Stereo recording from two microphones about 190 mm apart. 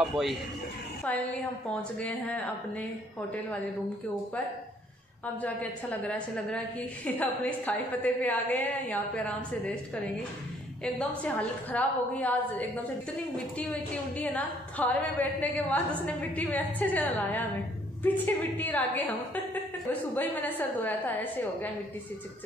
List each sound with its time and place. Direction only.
1.7 s a woman's voice: 5° left (ahead or behind)
5.2 s a woman's voice: 10° left (ahead or behind)
10.8 s a woman's voice: 5° left (ahead or behind)